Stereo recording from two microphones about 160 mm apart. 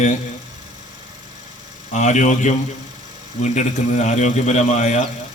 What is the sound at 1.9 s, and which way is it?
A man's voice, 50° left (ahead or behind).